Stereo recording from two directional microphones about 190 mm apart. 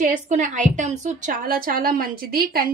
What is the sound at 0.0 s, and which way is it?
A woman's voice, 40° right (ahead or behind).